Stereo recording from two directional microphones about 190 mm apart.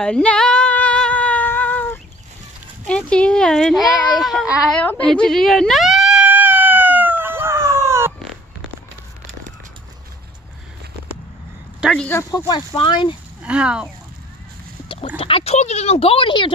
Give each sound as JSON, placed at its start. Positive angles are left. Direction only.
{"t": 0.0, "sound": "female singing", "side_deg": 5}
{"t": 2.9, "sound": "a sound", "side_deg": 5}
{"t": 11.8, "sound": "speech", "side_deg": 0}
{"t": 12.1, "sound": "speech", "side_deg": 15}
{"t": 13.4, "sound": "speech", "side_deg": -5}
{"t": 14.9, "sound": "speech", "side_deg": 30}